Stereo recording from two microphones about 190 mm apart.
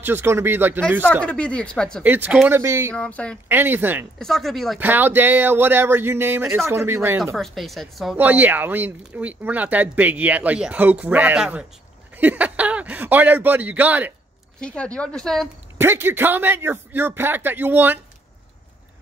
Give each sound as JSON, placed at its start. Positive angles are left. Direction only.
{"t": 0.0, "sound": "speech", "side_deg": -10}
{"t": 1.2, "sound": "speech", "side_deg": 5}
{"t": 2.0, "sound": "speech", "side_deg": -10}
{"t": 2.9, "sound": "speech", "side_deg": 5}
{"t": 3.4, "sound": "speech", "side_deg": -10}
{"t": 4.2, "sound": "speech", "side_deg": 0}
{"t": 4.7, "sound": "speech", "side_deg": -10}
{"t": 7.3, "sound": "speech", "side_deg": 0}
{"t": 14.6, "sound": "speech", "side_deg": 5}
{"t": 15.8, "sound": "speech", "side_deg": -10}